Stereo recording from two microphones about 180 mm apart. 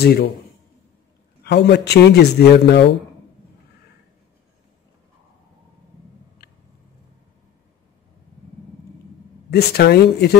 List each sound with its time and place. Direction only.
0.0 s speech: 60° left (ahead or behind)
1.4 s speech: 70° left (ahead or behind)
6.4 s a sound: 65° left (ahead or behind)
9.5 s speech: 65° left (ahead or behind)